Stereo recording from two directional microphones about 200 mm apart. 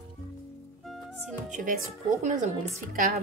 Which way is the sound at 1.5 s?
40° right (ahead or behind).